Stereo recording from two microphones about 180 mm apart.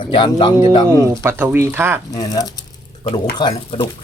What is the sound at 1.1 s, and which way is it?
Speech, 15° right (ahead or behind).